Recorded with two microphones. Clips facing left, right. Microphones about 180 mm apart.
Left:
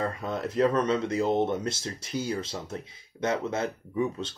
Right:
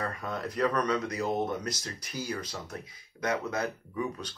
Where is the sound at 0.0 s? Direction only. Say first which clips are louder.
Left 4 dB; 25° left (ahead or behind).